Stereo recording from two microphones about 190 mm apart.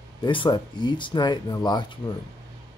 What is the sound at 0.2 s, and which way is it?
Speech, 25° left (ahead or behind).